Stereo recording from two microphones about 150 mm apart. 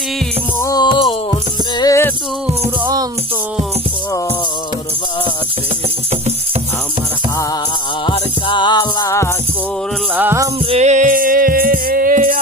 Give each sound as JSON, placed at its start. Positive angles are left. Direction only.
{"t": 0.6, "sound": "music", "side_deg": 25}
{"t": 2.8, "sound": "music", "side_deg": -25}
{"t": 8.0, "sound": "music", "side_deg": 35}
{"t": 10.2, "sound": "music", "side_deg": -15}
{"t": 10.7, "sound": "music", "side_deg": -50}